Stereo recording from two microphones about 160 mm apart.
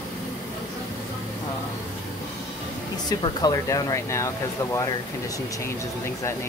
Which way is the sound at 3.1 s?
25° left (ahead or behind).